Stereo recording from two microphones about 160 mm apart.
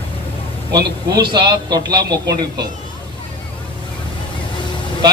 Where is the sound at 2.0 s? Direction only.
90° right.